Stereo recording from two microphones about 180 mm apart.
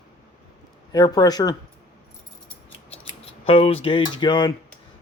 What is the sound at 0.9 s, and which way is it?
Speech, 20° left (ahead or behind).